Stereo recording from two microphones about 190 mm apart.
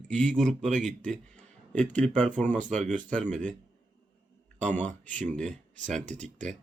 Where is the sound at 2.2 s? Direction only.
5° left (ahead or behind).